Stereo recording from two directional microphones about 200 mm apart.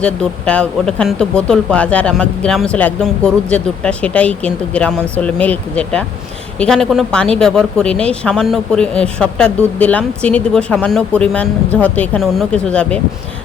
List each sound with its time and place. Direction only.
0.0 s speech: 5° left (ahead or behind)